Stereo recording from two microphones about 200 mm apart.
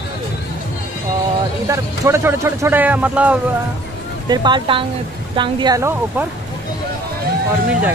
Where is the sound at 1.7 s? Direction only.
15° right (ahead or behind).